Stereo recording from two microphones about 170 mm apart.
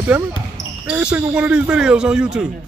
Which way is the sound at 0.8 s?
5° right (ahead or behind).